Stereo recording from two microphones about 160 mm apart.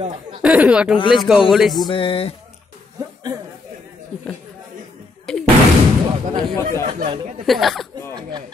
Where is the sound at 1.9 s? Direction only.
35° left (ahead or behind).